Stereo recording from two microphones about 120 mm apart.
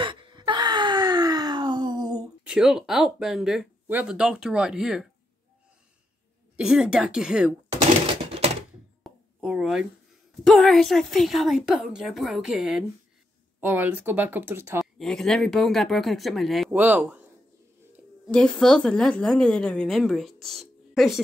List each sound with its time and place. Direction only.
0.0 s wail: 45° right (ahead or behind)
2.4 s a woman's voice: 5° right (ahead or behind)
3.8 s speech: 15° right (ahead or behind)
6.5 s speech: 5° right (ahead or behind)
8.1 s typewriter: 55° right (ahead or behind)
9.0 s a sound: 5° right (ahead or behind)
10.4 s a woman's voice: centre (ahead or behind)
13.6 s speech: 15° right (ahead or behind)
15.0 s a woman's voice: 5° left (ahead or behind)
16.7 s a man's voice: 15° right (ahead or behind)
18.3 s a woman's voice: 5° left (ahead or behind)